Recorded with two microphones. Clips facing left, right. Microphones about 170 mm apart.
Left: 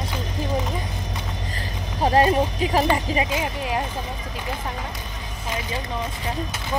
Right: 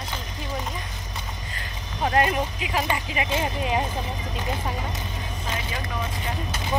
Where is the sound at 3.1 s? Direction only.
40° left (ahead or behind).